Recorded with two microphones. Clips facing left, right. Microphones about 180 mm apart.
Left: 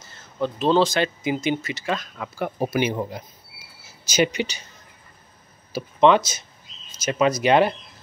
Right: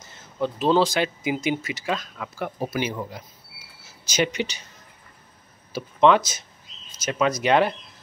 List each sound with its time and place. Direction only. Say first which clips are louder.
0.1 s speech: left 1 dB; 15° right (ahead or behind)
2.1 s speech: left 3 dB; 5° left (ahead or behind)
2.6 s speech: left 5 dB; 20° left (ahead or behind)
4.0 s speech: left 3 dB; 5° left (ahead or behind)
5.7 s speech: left 1 dB; 5° left (ahead or behind)